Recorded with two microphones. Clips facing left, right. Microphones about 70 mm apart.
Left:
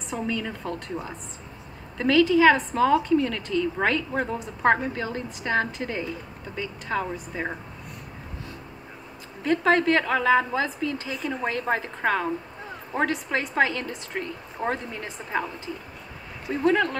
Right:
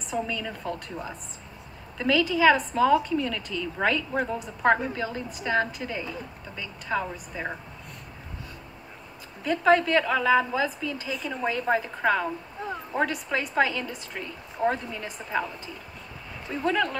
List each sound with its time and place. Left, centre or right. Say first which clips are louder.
0.1 s a woman's voice: left 1 dB; left
2.0 s a woman's voice: left 4 dB; left
9.4 s a woman's voice: even; left
16.6 s a woman's voice: left 4 dB; left